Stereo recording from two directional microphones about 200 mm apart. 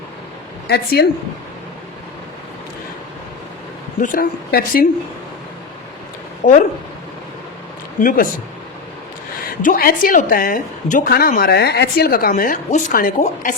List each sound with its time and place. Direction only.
0.7 s a woman's voice: 55° left (ahead or behind)
4.0 s a woman's voice: 45° left (ahead or behind)
6.4 s speech: 40° left (ahead or behind)
8.0 s a woman's voice: 45° left (ahead or behind)
9.6 s a woman's voice: 45° left (ahead or behind)